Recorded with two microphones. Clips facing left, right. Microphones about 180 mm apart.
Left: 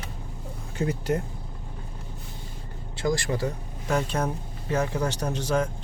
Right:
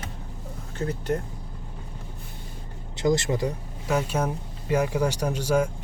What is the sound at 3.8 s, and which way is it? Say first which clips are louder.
Speech: right 1 dB; 10° right (ahead or behind).